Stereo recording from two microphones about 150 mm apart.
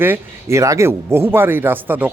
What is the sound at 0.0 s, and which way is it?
Speech, 15° right (ahead or behind).